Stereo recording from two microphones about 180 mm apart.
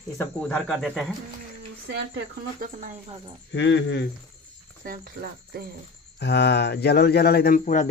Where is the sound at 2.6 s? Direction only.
55° right (ahead or behind).